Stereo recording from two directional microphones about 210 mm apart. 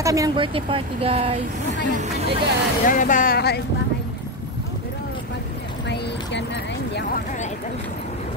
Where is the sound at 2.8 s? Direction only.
40° left (ahead or behind).